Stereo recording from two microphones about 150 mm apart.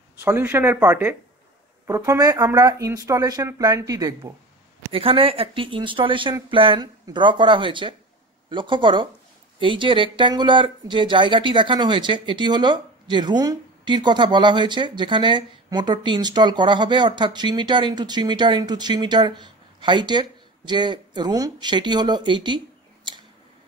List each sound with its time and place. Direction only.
0.2 s speech: 10° right (ahead or behind)
4.9 s speech: 35° right (ahead or behind)
23.1 s a sound: 30° right (ahead or behind)